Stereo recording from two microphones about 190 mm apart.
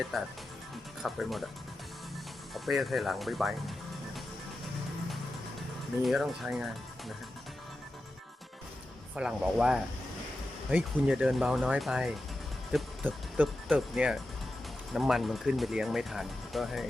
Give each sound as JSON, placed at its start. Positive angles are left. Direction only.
{"t": 0.1, "sound": "speech", "side_deg": 0}
{"t": 2.6, "sound": "speech", "side_deg": 0}
{"t": 6.0, "sound": "speech", "side_deg": 0}
{"t": 9.1, "sound": "speech", "side_deg": -5}